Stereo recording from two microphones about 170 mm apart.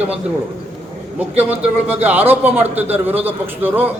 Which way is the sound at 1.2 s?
10° right (ahead or behind).